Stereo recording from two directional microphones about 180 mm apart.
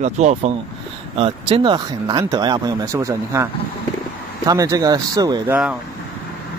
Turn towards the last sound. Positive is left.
turn(degrees=-20)  # may be behind; listen again after turning